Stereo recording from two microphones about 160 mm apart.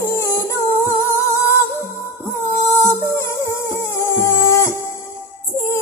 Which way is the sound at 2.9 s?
15° left (ahead or behind).